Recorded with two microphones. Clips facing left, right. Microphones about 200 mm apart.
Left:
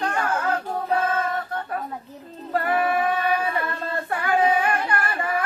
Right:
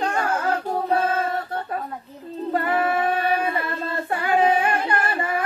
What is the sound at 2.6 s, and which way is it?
Female singing, 25° right (ahead or behind).